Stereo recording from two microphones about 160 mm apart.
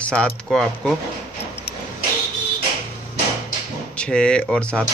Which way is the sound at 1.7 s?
90° left.